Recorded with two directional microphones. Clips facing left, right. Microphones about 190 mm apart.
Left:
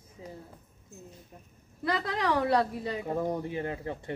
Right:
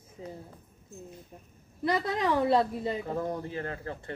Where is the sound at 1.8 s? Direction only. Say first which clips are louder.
Right 2 dB; 20° right (ahead or behind).